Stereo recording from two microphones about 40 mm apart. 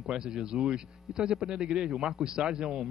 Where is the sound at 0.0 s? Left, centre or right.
Centre.